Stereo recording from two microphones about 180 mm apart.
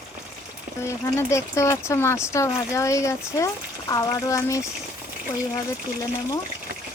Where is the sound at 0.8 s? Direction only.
15° left (ahead or behind).